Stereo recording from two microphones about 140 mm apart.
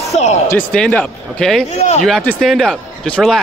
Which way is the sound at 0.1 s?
55° left (ahead or behind).